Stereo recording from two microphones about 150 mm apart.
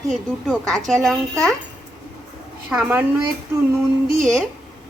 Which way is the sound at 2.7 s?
10° right (ahead or behind).